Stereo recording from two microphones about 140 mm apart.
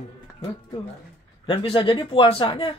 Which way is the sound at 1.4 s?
35° left (ahead or behind).